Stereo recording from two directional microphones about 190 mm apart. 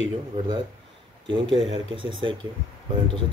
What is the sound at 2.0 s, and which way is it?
Speech, 25° right (ahead or behind).